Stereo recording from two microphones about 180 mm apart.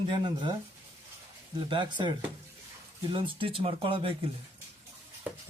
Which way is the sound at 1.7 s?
25° right (ahead or behind).